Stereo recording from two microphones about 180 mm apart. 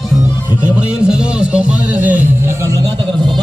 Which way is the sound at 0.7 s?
5° right (ahead or behind).